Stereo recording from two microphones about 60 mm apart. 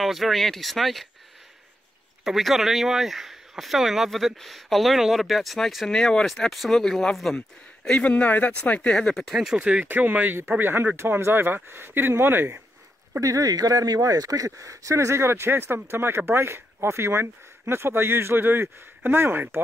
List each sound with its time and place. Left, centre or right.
0.0 s speech: centre
2.2 s speech: centre
5.9 s speech: centre
9.2 s speech: centre
9.6 s speech: centre; by 12.6 s right
13.2 s speech: right